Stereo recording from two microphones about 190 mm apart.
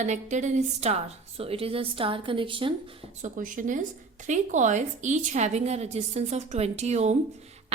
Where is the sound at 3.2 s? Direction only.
45° right (ahead or behind).